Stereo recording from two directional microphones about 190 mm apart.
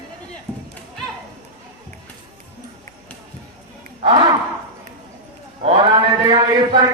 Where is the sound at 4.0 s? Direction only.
25° right (ahead or behind).